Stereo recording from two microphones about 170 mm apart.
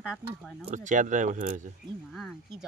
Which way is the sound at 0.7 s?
45° right (ahead or behind).